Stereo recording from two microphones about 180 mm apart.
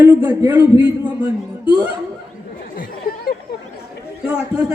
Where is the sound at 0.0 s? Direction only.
10° right (ahead or behind).